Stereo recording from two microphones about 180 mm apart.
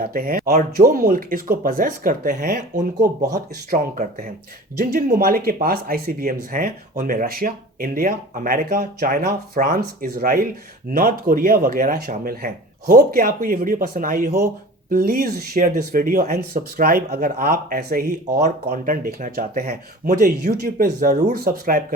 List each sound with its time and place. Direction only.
0.0 s speech: 55° right (ahead or behind)